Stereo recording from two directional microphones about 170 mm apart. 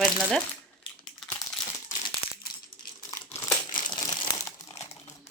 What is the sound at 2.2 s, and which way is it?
Crumpling, 60° left (ahead or behind).